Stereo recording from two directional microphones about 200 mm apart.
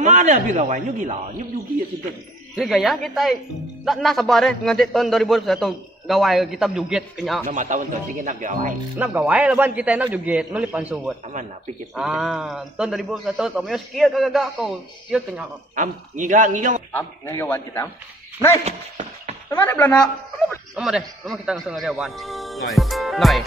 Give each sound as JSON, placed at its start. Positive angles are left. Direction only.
{"t": 0.0, "sound": "speech", "side_deg": -40}
{"t": 2.5, "sound": "a man's voice", "side_deg": 0}
{"t": 7.4, "sound": "speech", "side_deg": -40}
{"t": 8.9, "sound": "a man's voice", "side_deg": -10}
{"t": 15.7, "sound": "speech", "side_deg": -40}
{"t": 16.9, "sound": "a man's voice", "side_deg": 10}
{"t": 19.5, "sound": "a man's voice", "side_deg": 10}